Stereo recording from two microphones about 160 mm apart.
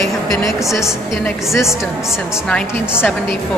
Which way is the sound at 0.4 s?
20° left (ahead or behind).